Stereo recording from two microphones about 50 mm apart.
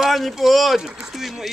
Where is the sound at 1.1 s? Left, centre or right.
Centre.